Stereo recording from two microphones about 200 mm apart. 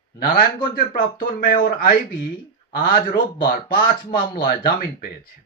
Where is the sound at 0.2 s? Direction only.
45° left (ahead or behind).